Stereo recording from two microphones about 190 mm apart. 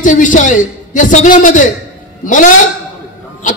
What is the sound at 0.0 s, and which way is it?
A man's voice, 40° left (ahead or behind).